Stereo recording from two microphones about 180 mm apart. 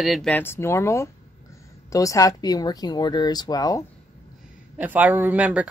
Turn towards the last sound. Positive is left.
turn(degrees=-5)  # may be behind; listen again after turning